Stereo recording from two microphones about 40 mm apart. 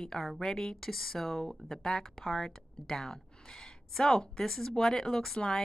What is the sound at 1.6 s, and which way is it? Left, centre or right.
A woman's voice, centre.